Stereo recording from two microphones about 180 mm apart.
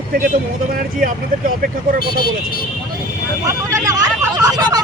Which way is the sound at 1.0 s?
50° right (ahead or behind).